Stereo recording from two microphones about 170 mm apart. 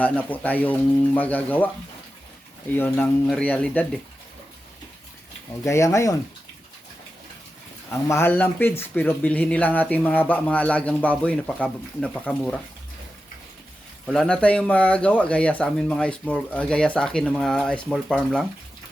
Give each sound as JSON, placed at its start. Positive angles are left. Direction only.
{"t": 0.0, "sound": "speech", "side_deg": 10}
{"t": 2.7, "sound": "speech", "side_deg": 10}
{"t": 5.6, "sound": "speech", "side_deg": 15}
{"t": 7.9, "sound": "speech", "side_deg": 15}
{"t": 14.1, "sound": "speech", "side_deg": 5}